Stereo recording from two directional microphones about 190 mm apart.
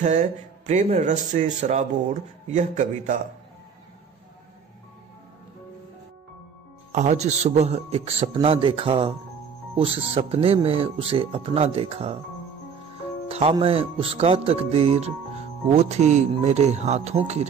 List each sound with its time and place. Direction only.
0.0 s speech: 40° right (ahead or behind)
6.9 s speech: 40° right (ahead or behind)
13.3 s speech: 30° right (ahead or behind)